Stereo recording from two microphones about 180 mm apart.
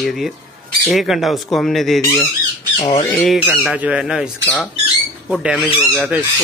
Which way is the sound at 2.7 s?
35° left (ahead or behind).